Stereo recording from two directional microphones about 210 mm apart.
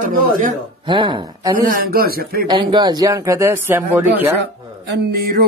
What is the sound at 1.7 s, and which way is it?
Speech, 45° right (ahead or behind).